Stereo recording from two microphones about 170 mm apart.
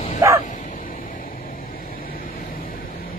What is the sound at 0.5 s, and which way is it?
Vehicle, 50° left (ahead or behind).